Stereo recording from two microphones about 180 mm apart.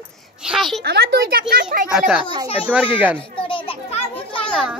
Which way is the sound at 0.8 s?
65° right (ahead or behind).